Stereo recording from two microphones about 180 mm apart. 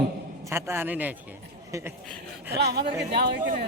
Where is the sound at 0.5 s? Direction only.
10° right (ahead or behind).